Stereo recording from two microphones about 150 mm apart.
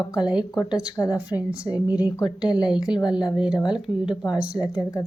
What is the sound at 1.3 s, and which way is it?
A woman's voice, 10° right (ahead or behind).